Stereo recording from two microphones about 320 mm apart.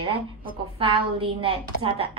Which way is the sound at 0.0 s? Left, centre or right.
Centre.